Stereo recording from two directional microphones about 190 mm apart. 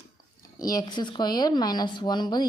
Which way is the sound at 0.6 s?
20° left (ahead or behind).